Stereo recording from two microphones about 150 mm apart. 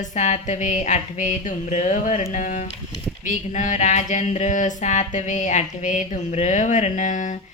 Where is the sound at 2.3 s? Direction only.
60° left (ahead or behind).